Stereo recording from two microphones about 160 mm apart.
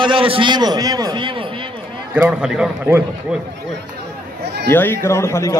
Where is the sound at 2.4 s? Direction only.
5° right (ahead or behind).